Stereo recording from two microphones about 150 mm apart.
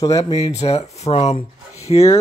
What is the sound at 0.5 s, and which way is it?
Speech, 45° left (ahead or behind).